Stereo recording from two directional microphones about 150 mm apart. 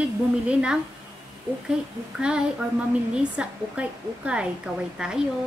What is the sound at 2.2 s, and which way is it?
A woman's voice, 5° right (ahead or behind).